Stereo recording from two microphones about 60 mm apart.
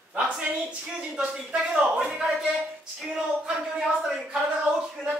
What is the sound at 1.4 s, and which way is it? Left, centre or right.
A man's voice, centre.